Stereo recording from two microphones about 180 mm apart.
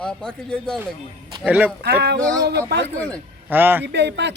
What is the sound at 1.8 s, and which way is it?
Speech, 70° right (ahead or behind).